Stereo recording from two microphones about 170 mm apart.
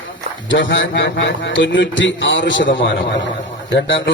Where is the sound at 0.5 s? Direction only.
90° left.